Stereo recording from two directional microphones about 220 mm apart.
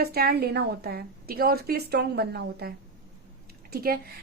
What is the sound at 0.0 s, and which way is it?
A woman's voice, 45° right (ahead or behind).